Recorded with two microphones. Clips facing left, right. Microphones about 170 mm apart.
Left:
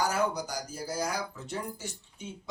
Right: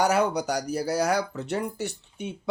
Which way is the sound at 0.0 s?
70° right (ahead or behind).